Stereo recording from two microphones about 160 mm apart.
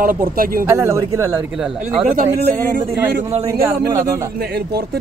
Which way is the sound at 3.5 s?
15° right (ahead or behind).